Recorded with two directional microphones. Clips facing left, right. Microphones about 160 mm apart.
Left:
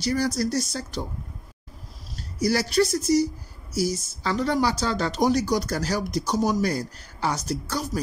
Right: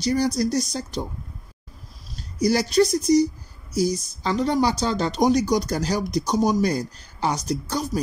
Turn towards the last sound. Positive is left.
turn(degrees=-15)  # may be behind; listen again after turning